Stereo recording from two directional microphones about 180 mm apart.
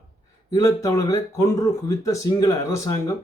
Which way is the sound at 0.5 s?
20° left (ahead or behind).